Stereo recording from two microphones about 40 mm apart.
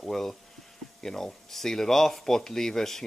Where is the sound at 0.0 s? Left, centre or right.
Centre.